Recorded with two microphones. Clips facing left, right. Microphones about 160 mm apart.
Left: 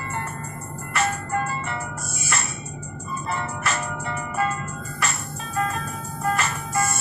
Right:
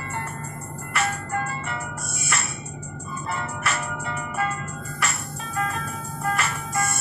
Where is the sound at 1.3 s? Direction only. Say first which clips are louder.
Left 2 dB; 35° left (ahead or behind).